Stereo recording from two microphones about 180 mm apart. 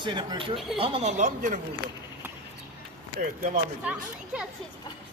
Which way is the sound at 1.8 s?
55° right (ahead or behind).